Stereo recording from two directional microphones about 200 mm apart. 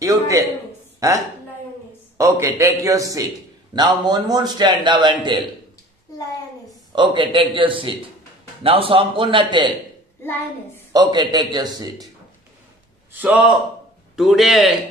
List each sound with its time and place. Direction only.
0.0 s a man's voice: 15° right (ahead or behind)
7.0 s a man's voice: 25° right (ahead or behind)
10.9 s a man's voice: 20° right (ahead or behind)
13.1 s a man's voice: 5° right (ahead or behind)